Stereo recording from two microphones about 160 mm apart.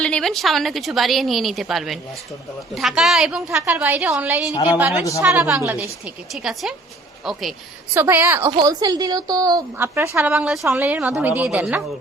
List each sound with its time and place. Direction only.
0.0 s a woman's voice: 5° left (ahead or behind); by 5.8 s 15° right (ahead or behind)
6.3 s a woman's voice: centre (ahead or behind)
7.9 s a woman's voice: 15° right (ahead or behind)
10.3 s a woman's voice: centre (ahead or behind)